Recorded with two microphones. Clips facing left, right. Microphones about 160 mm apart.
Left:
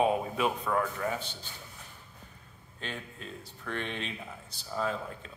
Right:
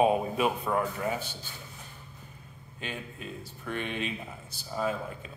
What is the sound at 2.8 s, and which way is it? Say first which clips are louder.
A man's voice: right 2 dB; 10° right (ahead or behind).